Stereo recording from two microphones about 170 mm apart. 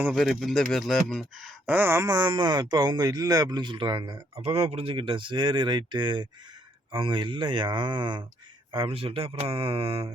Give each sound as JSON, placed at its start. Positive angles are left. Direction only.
{"t": 0.0, "sound": "speech", "side_deg": 0}
{"t": 1.7, "sound": "speech", "side_deg": -15}